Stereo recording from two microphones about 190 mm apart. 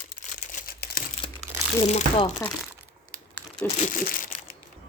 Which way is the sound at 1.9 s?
35° left (ahead or behind).